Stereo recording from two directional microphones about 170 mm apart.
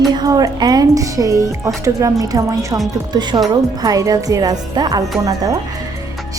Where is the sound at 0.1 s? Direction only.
25° right (ahead or behind).